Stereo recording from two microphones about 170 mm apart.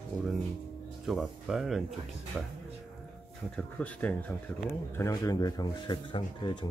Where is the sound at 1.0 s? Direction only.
Centre (ahead or behind).